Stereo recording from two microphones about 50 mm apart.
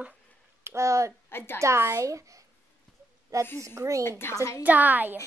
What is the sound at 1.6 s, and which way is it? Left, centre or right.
A child's voice, right.